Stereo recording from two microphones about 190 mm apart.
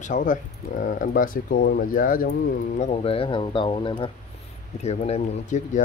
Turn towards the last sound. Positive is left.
turn(degrees=40)  # may be behind; listen again after turning